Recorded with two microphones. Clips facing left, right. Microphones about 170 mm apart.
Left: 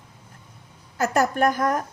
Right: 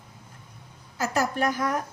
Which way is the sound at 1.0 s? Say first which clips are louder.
Left 5 dB; 50° left (ahead or behind).